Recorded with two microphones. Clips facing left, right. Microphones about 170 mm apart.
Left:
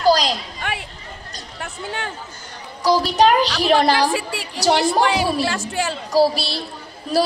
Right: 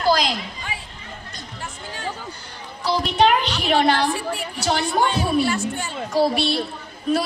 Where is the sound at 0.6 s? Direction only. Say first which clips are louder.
Left 6 dB; 70° left (ahead or behind).